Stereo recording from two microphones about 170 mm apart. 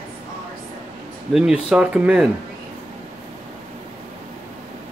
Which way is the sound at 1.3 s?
5° right (ahead or behind).